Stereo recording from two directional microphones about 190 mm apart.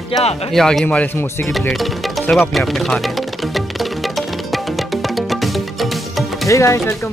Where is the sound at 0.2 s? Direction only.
35° left (ahead or behind).